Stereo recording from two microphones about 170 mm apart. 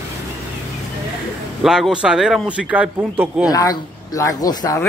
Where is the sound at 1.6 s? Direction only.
5° right (ahead or behind).